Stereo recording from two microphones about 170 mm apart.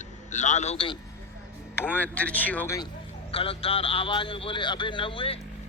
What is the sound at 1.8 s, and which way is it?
Speech, 10° left (ahead or behind).